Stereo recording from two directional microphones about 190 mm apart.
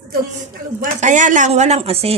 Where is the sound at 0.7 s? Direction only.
40° right (ahead or behind).